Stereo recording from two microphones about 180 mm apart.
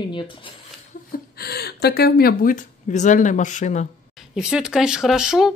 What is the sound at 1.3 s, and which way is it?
Speech, 60° left (ahead or behind).